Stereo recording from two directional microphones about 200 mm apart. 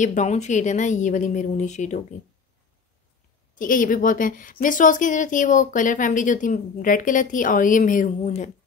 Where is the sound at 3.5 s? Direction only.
40° left (ahead or behind).